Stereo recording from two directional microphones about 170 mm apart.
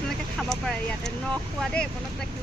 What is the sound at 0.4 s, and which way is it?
Speech, 5° left (ahead or behind).